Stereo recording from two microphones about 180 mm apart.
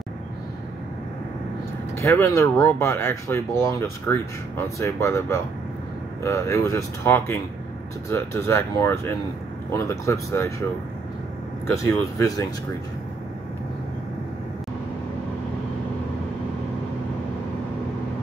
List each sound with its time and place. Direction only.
2.0 s speech: 15° left (ahead or behind)
11.7 s speech: 20° left (ahead or behind)